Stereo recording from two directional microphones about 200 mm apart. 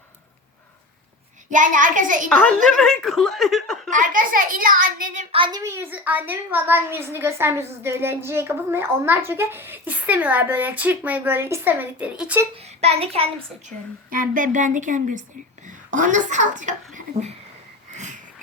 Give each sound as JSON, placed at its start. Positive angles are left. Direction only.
{"t": 1.5, "sound": "a woman's voice", "side_deg": -40}
{"t": 2.3, "sound": "speech", "side_deg": 5}
{"t": 3.8, "sound": "a woman's voice", "side_deg": -40}
{"t": 5.3, "sound": "a woman's voice", "side_deg": -25}
{"t": 12.8, "sound": "a child's voice", "side_deg": -30}
{"t": 13.7, "sound": "a woman's voice", "side_deg": -40}
{"t": 17.9, "sound": "frog", "side_deg": -35}